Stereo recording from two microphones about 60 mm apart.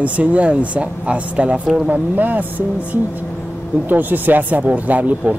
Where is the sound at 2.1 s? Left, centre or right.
Right.